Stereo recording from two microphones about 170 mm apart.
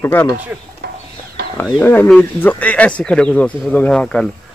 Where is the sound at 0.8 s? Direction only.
70° right (ahead or behind).